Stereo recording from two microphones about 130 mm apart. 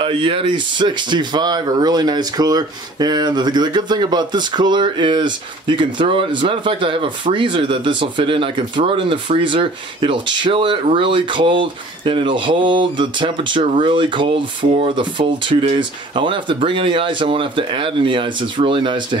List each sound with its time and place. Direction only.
0.0 s speech: 45° right (ahead or behind)